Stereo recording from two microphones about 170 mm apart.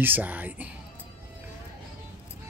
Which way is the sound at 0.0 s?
10° right (ahead or behind).